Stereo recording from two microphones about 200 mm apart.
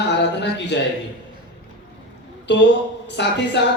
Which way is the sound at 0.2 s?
60° left (ahead or behind).